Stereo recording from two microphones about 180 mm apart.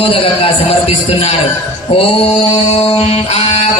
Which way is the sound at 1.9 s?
30° left (ahead or behind).